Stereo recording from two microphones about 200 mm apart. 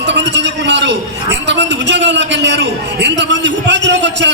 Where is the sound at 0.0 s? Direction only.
60° right (ahead or behind).